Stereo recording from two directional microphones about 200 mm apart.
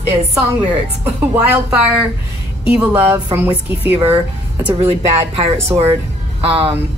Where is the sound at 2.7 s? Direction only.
10° right (ahead or behind).